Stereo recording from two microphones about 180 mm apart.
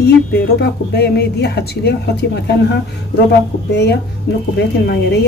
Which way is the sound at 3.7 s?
70° left (ahead or behind).